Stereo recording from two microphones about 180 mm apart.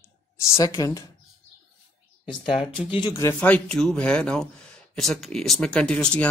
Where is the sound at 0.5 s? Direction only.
15° left (ahead or behind).